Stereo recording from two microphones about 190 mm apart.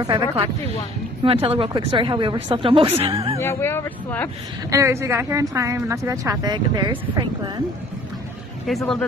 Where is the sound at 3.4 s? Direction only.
15° left (ahead or behind).